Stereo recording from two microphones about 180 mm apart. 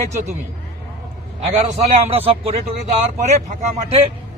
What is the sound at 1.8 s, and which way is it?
A man's voice, 35° right (ahead or behind).